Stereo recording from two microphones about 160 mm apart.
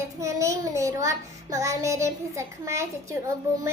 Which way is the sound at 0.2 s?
20° right (ahead or behind).